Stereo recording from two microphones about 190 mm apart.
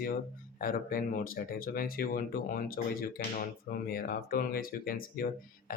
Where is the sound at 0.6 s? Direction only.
45° left (ahead or behind).